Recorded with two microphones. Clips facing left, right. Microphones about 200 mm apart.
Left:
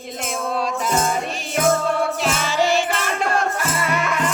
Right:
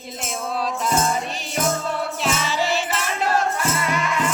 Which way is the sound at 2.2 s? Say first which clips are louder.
Left 3 dB; centre (ahead or behind).